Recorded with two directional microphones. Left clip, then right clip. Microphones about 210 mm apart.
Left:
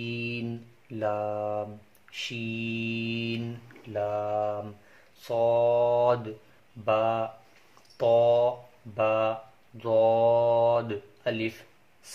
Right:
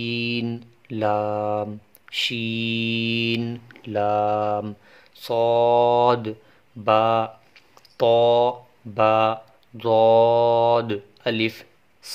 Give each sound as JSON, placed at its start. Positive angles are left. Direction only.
{"t": 0.0, "sound": "mantra", "side_deg": -40}
{"t": 5.2, "sound": "speech", "side_deg": -45}